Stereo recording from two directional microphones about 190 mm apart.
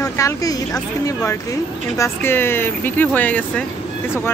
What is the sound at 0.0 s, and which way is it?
Speech, 15° left (ahead or behind).